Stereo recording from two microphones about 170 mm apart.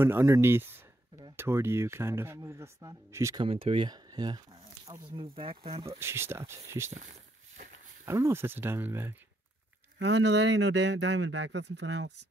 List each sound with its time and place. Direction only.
0.0 s speech: 15° right (ahead or behind)
3.3 s speech: 35° right (ahead or behind)
5.9 s speech: 15° right (ahead or behind)
6.9 s a sound: 45° right (ahead or behind)
8.0 s speech: 15° right (ahead or behind)
9.9 s speech: 90° right